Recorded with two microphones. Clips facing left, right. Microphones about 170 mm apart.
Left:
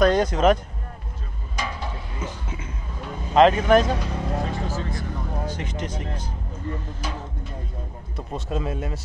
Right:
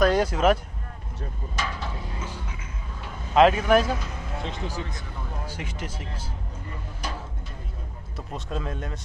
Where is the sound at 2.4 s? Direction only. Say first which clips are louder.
Left 5 dB; 30° left (ahead or behind).